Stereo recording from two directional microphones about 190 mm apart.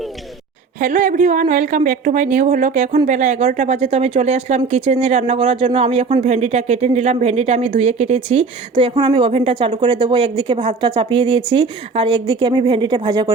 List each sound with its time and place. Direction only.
0.8 s a woman's voice: 40° right (ahead or behind); by 13.3 s 25° right (ahead or behind)